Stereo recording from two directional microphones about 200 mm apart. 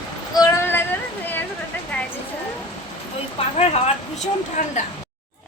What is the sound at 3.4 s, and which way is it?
Speech, 25° left (ahead or behind).